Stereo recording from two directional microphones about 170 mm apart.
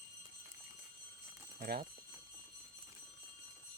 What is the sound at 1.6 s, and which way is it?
Speech, 65° right (ahead or behind).